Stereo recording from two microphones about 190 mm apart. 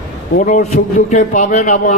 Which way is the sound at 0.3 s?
40° left (ahead or behind).